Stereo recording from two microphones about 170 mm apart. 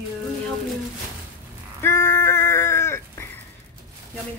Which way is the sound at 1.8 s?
15° left (ahead or behind).